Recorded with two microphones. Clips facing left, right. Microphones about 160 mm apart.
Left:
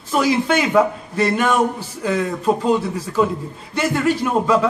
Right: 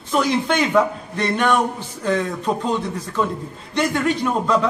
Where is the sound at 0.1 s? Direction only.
5° left (ahead or behind).